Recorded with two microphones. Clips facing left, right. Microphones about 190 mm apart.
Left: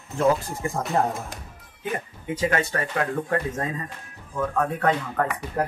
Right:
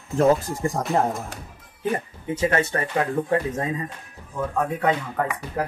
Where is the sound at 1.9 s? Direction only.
30° right (ahead or behind); by 5.3 s 10° right (ahead or behind).